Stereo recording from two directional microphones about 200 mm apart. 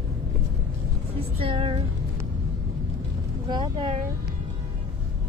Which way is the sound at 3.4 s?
20° right (ahead or behind).